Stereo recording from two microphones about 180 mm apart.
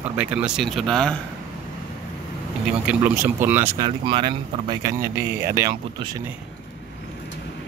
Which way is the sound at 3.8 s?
25° right (ahead or behind).